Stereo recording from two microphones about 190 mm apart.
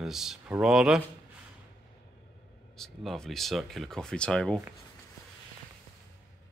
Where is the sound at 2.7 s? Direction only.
Centre (ahead or behind).